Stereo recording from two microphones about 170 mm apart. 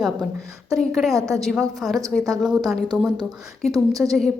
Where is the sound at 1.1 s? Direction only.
20° right (ahead or behind).